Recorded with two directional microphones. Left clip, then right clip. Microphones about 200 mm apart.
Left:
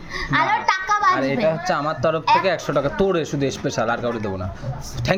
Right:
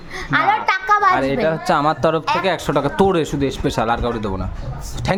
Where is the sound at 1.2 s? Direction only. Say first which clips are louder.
Right 2 dB; 25° right (ahead or behind).